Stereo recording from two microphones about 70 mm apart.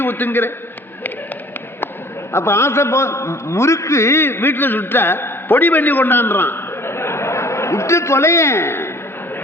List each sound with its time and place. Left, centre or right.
0.0 s a man's voice: left
2.3 s a man's voice: left